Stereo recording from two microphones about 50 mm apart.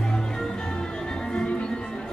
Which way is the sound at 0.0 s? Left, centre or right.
Centre.